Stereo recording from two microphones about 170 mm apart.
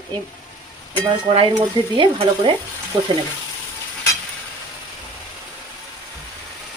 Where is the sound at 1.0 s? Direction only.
30° right (ahead or behind).